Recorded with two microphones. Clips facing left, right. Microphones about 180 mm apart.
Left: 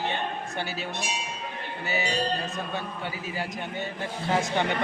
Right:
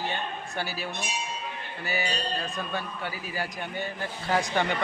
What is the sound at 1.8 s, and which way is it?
A man's voice, 25° left (ahead or behind).